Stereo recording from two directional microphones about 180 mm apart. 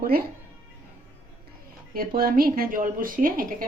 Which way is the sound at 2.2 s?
55° right (ahead or behind).